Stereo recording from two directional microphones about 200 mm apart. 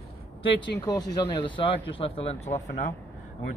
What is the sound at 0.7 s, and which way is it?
Speech, 20° left (ahead or behind).